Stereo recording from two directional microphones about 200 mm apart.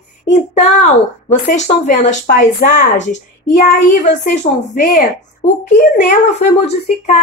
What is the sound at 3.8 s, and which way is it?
Speech, 40° left (ahead or behind).